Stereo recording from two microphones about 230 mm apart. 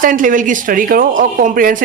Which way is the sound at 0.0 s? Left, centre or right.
Right.